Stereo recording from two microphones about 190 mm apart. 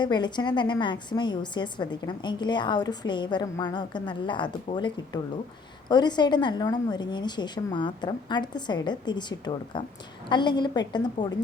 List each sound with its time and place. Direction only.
0.0 s a woman's voice: 25° left (ahead or behind)